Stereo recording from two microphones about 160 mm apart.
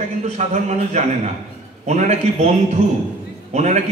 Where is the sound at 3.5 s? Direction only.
45° right (ahead or behind).